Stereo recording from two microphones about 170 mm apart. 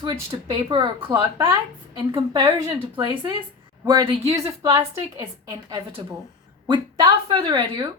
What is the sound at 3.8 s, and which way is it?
A woman's voice, 25° right (ahead or behind).